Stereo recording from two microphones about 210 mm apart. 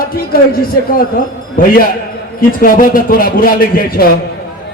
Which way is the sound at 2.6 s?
40° left (ahead or behind).